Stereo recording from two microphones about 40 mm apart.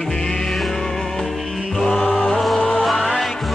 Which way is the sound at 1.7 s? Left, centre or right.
Centre.